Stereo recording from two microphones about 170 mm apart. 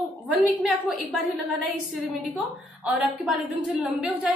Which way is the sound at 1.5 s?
Centre (ahead or behind).